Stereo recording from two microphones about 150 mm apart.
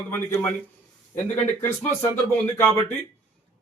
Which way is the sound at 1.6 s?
15° left (ahead or behind).